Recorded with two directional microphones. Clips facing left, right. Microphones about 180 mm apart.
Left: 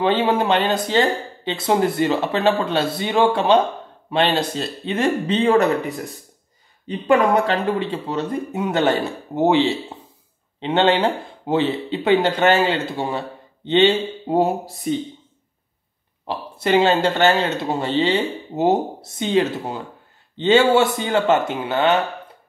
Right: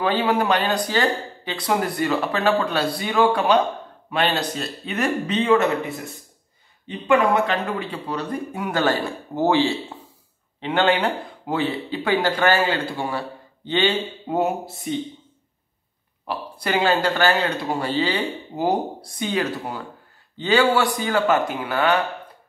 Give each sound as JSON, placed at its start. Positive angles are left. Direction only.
{"t": 0.0, "sound": "speech", "side_deg": 25}
{"t": 7.1, "sound": "speech", "side_deg": 35}
{"t": 16.3, "sound": "speech", "side_deg": 25}